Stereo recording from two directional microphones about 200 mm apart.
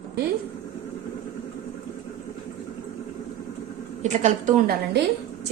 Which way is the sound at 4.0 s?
35° right (ahead or behind).